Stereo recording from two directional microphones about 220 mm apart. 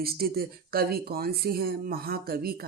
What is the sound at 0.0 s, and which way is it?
A woman's voice, 45° right (ahead or behind).